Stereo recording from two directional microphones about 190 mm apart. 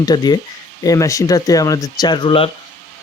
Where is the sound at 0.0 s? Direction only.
20° left (ahead or behind).